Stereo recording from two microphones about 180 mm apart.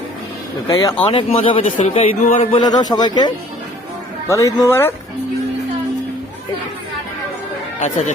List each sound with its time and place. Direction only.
0.7 s speech: 20° left (ahead or behind)
1.0 s speech: 35° left (ahead or behind); by 4.9 s 15° left (ahead or behind)
7.8 s speech: 40° left (ahead or behind)